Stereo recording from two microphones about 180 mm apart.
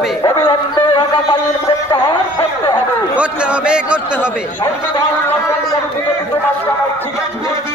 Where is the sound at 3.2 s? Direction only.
5° right (ahead or behind).